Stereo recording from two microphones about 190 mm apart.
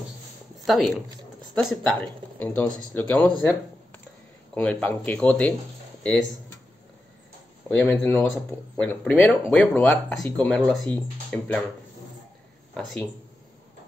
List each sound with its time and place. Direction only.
0.7 s speech: centre (ahead or behind)
7.7 s speech: 10° left (ahead or behind)
12.7 s speech: 5° left (ahead or behind)